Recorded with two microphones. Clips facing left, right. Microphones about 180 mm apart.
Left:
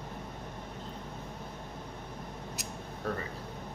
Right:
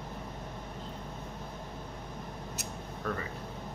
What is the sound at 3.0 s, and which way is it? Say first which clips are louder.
Speech: even; 30° left (ahead or behind).